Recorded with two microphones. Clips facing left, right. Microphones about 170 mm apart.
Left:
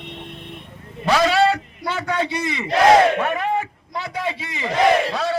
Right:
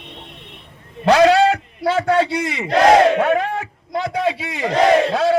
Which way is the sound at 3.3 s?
75° right (ahead or behind).